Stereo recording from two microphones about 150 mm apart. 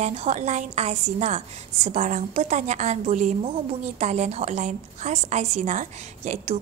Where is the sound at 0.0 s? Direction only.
50° right (ahead or behind).